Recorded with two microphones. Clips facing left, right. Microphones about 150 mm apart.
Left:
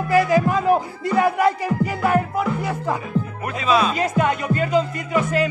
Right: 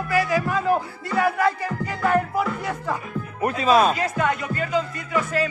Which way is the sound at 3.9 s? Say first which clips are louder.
Left 3 dB; 20° left (ahead or behind).